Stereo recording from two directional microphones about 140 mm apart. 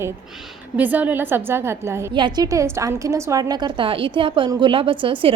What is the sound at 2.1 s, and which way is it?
A woman's voice, 30° right (ahead or behind).